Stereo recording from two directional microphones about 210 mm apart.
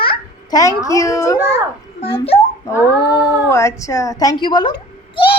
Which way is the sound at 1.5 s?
30° left (ahead or behind).